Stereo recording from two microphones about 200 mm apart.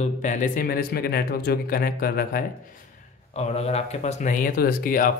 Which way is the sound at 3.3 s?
35° left (ahead or behind).